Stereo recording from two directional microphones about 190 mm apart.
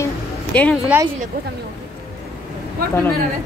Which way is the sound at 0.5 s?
5° left (ahead or behind).